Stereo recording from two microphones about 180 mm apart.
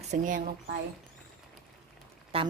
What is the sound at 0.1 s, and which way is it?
Speech, 45° right (ahead or behind).